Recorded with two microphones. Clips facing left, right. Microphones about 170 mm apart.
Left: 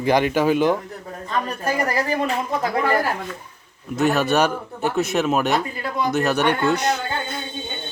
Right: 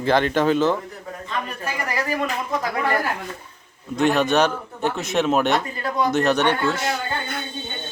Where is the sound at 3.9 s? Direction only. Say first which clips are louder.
Even; 5° left (ahead or behind).